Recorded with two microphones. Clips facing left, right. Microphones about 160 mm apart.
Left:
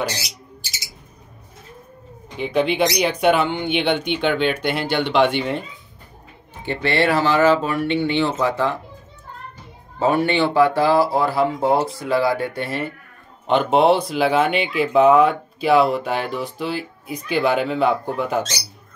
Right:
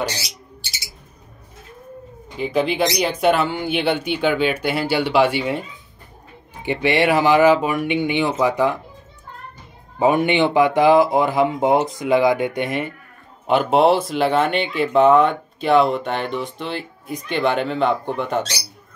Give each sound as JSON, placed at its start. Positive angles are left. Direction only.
{"t": 2.3, "sound": "speech", "side_deg": 0}
{"t": 6.6, "sound": "speech", "side_deg": -15}
{"t": 9.9, "sound": "speech", "side_deg": -15}
{"t": 13.5, "sound": "speech", "side_deg": -5}